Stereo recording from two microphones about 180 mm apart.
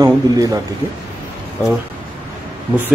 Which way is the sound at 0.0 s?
20° right (ahead or behind).